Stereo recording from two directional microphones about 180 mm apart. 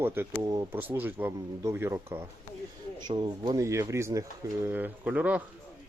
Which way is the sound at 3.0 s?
25° right (ahead or behind).